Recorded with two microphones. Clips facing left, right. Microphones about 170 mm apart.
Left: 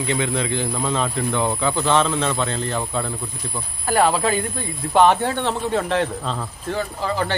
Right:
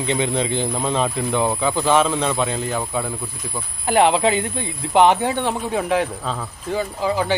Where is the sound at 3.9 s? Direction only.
20° right (ahead or behind).